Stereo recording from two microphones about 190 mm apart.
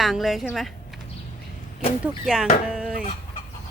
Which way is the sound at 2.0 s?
5° right (ahead or behind).